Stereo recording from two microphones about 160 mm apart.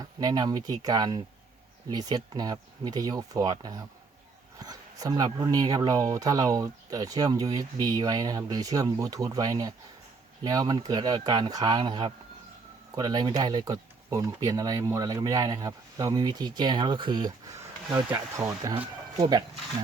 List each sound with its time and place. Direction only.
0.0 s speech: 25° right (ahead or behind)
19.2 s speech: 30° right (ahead or behind)